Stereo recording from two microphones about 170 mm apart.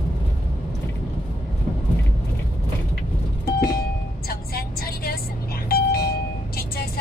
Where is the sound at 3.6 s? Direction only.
65° left (ahead or behind).